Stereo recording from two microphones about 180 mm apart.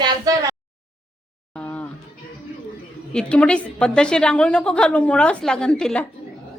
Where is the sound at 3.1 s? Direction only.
5° left (ahead or behind).